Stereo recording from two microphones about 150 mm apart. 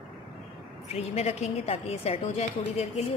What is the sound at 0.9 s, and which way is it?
A woman's voice, 45° left (ahead or behind).